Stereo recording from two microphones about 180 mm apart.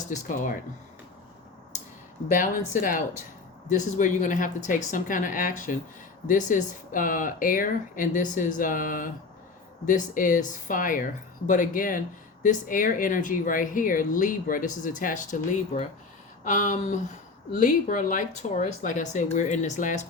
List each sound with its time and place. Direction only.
0.1 s speech: 50° left (ahead or behind)
2.3 s speech: 50° left (ahead or behind)